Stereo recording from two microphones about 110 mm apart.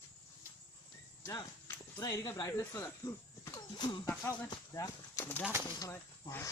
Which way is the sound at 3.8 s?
40° left (ahead or behind).